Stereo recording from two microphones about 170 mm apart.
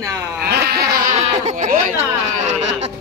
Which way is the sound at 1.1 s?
45° right (ahead or behind).